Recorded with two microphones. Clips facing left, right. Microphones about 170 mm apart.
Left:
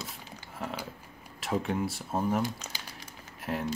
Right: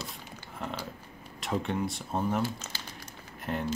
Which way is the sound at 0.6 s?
5° left (ahead or behind).